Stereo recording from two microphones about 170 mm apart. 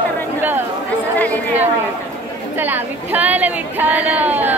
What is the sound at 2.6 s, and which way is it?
Speech, 10° right (ahead or behind).